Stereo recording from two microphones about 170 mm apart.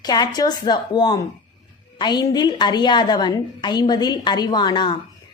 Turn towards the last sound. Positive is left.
turn(degrees=25)  # may be behind; listen again after turning